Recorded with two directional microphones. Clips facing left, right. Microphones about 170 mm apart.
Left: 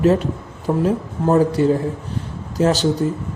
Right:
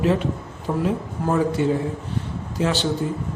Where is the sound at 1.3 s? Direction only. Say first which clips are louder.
Left 4 dB; 40° left (ahead or behind).